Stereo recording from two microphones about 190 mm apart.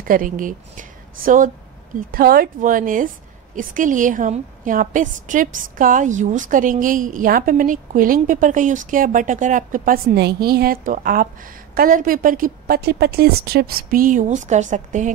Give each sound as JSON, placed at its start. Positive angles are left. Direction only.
{"t": 0.1, "sound": "a woman's voice", "side_deg": -45}